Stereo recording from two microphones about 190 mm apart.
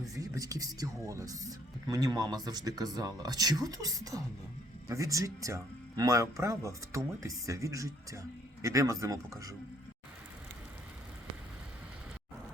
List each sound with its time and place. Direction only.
0.0 s speech: 20° right (ahead or behind)